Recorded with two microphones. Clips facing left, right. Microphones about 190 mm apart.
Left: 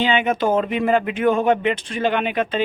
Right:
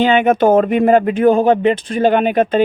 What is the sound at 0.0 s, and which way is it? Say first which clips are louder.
Speech: right 7 dB; 45° right (ahead or behind).